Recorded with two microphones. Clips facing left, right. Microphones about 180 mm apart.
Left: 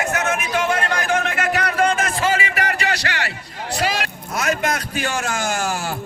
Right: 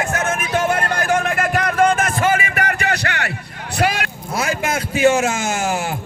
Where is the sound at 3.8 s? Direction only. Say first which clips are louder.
Right 3 dB; 55° right (ahead or behind).